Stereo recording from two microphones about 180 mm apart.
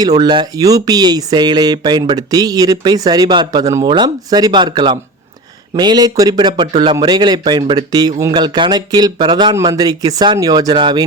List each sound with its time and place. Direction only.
0.0 s speech: 20° right (ahead or behind)